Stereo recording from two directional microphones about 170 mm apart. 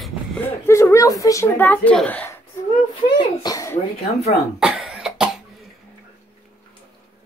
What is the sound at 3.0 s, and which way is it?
Speech, 30° left (ahead or behind).